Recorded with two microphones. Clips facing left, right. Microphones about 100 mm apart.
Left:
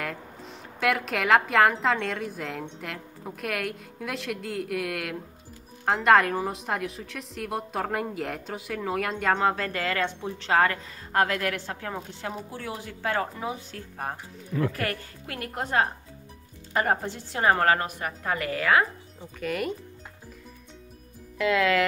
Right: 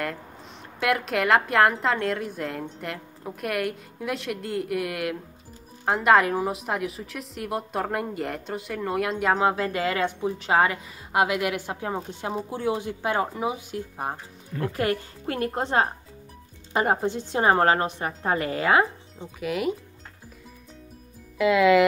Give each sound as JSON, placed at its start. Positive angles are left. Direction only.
{"t": 0.7, "sound": "a woman's voice", "side_deg": 0}
{"t": 19.4, "sound": "a woman's voice", "side_deg": -5}
{"t": 21.4, "sound": "a woman's voice", "side_deg": -10}